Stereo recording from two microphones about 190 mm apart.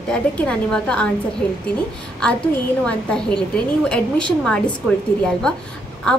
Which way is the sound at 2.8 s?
5° left (ahead or behind).